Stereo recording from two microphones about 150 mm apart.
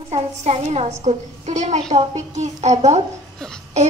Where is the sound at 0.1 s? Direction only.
45° right (ahead or behind).